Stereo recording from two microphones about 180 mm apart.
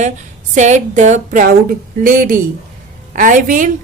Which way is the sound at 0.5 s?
40° right (ahead or behind).